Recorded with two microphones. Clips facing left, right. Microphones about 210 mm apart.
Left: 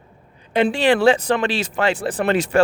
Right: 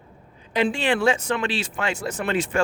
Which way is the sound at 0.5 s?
60° left (ahead or behind).